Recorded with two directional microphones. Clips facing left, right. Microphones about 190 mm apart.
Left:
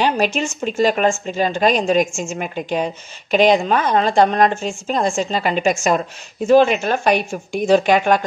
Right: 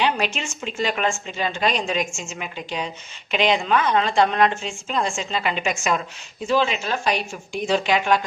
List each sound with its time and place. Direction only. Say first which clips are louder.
0.0 s speech: left 5 dB; 45° left (ahead or behind)